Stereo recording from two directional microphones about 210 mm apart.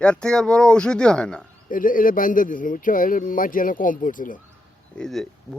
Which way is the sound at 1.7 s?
40° left (ahead or behind).